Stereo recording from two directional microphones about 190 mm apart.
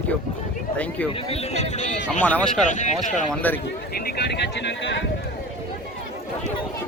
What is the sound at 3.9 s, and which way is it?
Speech, 55° left (ahead or behind).